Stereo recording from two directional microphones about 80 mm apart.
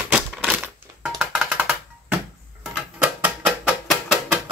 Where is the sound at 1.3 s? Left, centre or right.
Centre.